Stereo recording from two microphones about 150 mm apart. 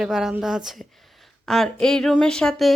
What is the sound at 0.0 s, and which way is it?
Speech, 5° right (ahead or behind).